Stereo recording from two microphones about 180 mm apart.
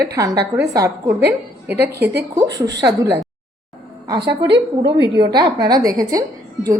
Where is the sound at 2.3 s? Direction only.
20° right (ahead or behind).